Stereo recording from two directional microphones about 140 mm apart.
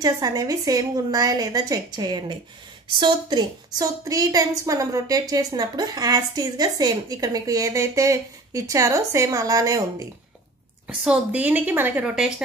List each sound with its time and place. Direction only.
0.0 s a woman's voice: 25° right (ahead or behind)
10.9 s a woman's voice: 10° right (ahead or behind)